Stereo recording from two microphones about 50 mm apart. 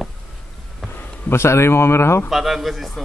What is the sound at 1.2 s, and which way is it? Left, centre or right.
Speech, left.